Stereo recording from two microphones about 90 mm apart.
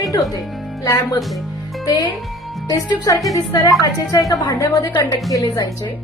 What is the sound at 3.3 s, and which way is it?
A woman's voice, 45° left (ahead or behind).